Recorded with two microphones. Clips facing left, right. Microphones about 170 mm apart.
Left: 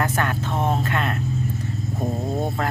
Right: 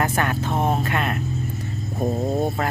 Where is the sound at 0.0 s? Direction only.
15° right (ahead or behind).